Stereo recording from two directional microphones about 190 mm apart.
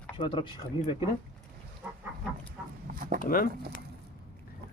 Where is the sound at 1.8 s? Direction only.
10° right (ahead or behind).